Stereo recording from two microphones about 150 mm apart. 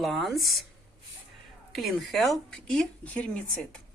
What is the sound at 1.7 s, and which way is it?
Speech, centre (ahead or behind).